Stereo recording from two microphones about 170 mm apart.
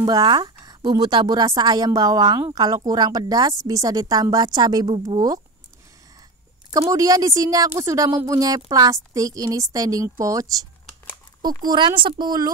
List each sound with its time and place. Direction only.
0.0 s a woman's voice: 25° right (ahead or behind)
6.7 s a woman's voice: 20° right (ahead or behind)
11.4 s a woman's voice: 25° right (ahead or behind)